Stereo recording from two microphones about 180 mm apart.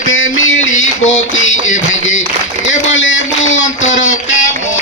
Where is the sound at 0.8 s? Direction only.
90° left.